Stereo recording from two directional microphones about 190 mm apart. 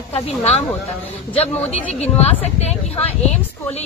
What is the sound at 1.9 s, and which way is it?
A woman's voice, 35° left (ahead or behind).